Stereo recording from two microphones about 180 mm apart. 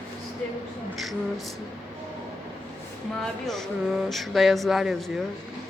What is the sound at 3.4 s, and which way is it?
A woman's voice, centre (ahead or behind).